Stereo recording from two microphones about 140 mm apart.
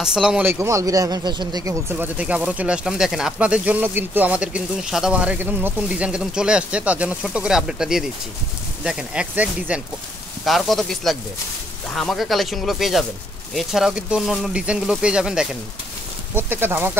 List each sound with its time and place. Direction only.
0.0 s speech: 5° right (ahead or behind); by 2.0 s 25° right (ahead or behind)
2.1 s speech: 10° right (ahead or behind)
10.4 s speech: centre (ahead or behind); by 16.9 s 15° right (ahead or behind)